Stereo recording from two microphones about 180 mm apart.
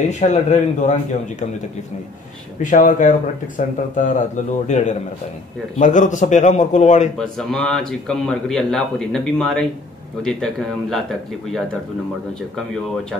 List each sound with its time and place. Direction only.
0.1 s a man's voice: 40° left (ahead or behind)
2.6 s a man's voice: 45° left (ahead or behind)
7.2 s a man's voice: 5° left (ahead or behind)